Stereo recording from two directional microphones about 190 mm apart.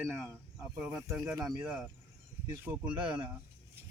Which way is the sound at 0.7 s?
5° right (ahead or behind).